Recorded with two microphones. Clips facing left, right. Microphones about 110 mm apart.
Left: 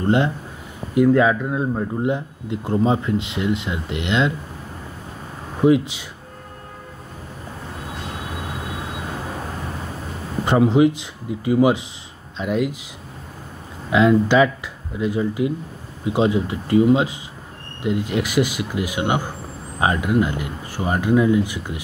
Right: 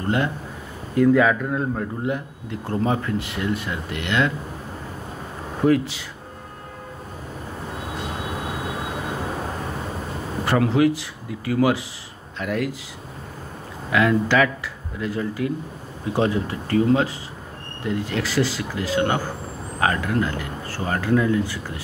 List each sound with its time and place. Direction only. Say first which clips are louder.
0.0 s a man's voice: left 4 dB; 25° left (ahead or behind)
5.6 s speech: left 3 dB; 15° left (ahead or behind)
10.4 s a man's voice: left 3 dB; 20° left (ahead or behind)
13.8 s a man's voice: left 4 dB; 20° left (ahead or behind)